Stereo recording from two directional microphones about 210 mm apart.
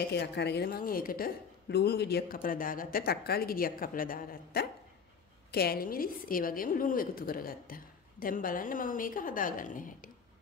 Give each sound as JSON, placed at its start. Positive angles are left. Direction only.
{"t": 0.1, "sound": "a woman's voice", "side_deg": 55}